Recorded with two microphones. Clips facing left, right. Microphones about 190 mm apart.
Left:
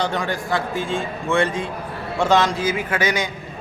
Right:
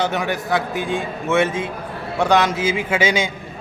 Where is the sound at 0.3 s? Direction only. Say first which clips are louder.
Right 2 dB; 20° right (ahead or behind).